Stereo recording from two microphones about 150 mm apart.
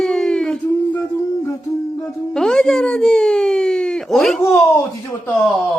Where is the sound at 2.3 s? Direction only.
5° left (ahead or behind).